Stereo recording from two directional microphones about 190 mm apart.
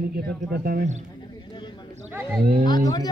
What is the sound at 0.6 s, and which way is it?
Speech, 55° right (ahead or behind).